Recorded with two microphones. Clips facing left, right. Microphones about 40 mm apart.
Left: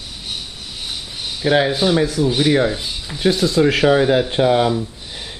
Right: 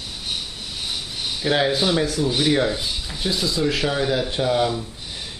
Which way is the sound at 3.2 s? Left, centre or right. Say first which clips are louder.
Left 8 dB; left.